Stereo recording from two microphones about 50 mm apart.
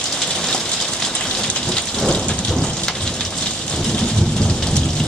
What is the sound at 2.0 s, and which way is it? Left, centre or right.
Rain, centre.